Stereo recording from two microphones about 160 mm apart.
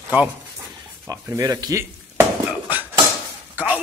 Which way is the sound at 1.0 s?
20° right (ahead or behind).